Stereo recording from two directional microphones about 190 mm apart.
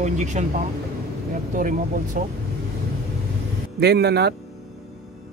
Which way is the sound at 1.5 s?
45° right (ahead or behind).